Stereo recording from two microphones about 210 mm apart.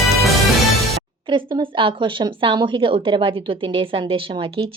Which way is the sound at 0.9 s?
25° right (ahead or behind).